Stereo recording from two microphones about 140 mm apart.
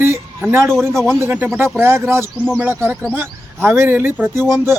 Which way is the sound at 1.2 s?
15° right (ahead or behind).